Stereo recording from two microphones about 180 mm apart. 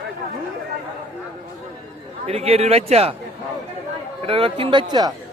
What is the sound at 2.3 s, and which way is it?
Speech, 35° right (ahead or behind).